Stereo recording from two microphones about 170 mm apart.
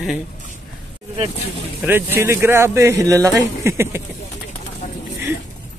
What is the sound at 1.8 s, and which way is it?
A man's voice, 15° right (ahead or behind).